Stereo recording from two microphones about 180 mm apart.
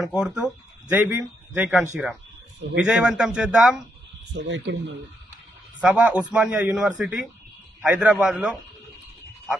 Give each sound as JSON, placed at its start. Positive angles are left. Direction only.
{"t": 0.0, "sound": "a man's voice", "side_deg": -5}
{"t": 4.3, "sound": "speech", "side_deg": -75}
{"t": 5.8, "sound": "speech", "side_deg": -5}